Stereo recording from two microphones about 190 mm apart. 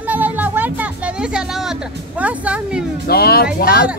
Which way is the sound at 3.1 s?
55° left (ahead or behind).